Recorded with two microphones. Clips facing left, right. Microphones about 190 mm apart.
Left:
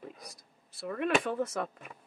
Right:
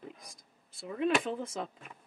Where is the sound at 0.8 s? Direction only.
65° left (ahead or behind).